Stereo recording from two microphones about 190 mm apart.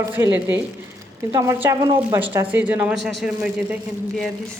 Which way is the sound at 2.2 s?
10° right (ahead or behind).